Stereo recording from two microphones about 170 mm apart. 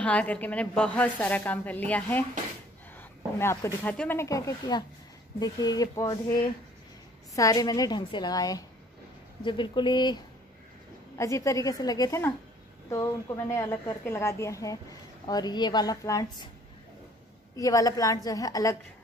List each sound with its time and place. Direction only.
0.0 s a woman's voice: 10° left (ahead or behind)
4.2 s a woman's voice: 20° left (ahead or behind)
7.3 s a woman's voice: 20° left (ahead or behind)
17.6 s a woman's voice: 20° left (ahead or behind)